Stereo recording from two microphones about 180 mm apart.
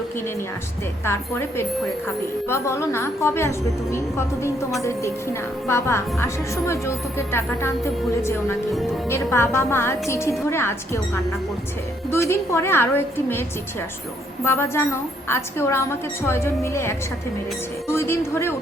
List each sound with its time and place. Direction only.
1.0 s a woman's voice: 15° left (ahead or behind)
14.4 s a woman's voice: 15° left (ahead or behind)